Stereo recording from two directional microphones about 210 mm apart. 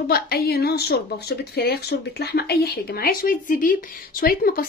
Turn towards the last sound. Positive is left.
turn(degrees=45)  # may be behind; listen again after turning